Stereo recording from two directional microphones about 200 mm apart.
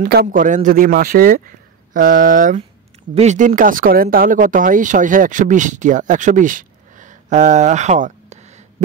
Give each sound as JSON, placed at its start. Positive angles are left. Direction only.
{"t": 0.0, "sound": "a man's voice", "side_deg": -50}
{"t": 2.0, "sound": "a sound", "side_deg": -45}
{"t": 3.2, "sound": "speech", "side_deg": -35}